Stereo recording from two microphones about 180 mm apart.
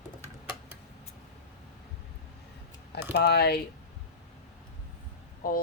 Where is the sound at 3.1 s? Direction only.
65° left (ahead or behind).